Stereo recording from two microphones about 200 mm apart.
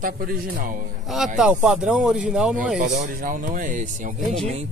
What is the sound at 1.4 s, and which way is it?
Speech, 5° right (ahead or behind).